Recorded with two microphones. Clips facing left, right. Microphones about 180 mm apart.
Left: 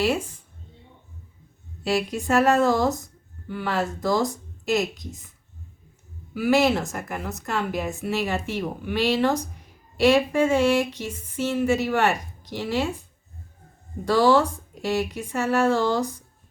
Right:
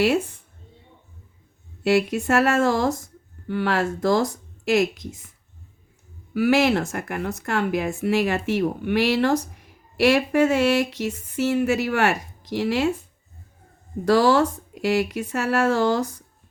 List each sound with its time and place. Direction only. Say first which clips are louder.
0.0 s a woman's voice: right 3 dB; 60° right (ahead or behind)
1.8 s a woman's voice: right 5 dB; 65° right (ahead or behind)
6.3 s a woman's voice: right 1 dB; 65° right (ahead or behind)
14.1 s a woman's voice: right 1 dB; 65° right (ahead or behind)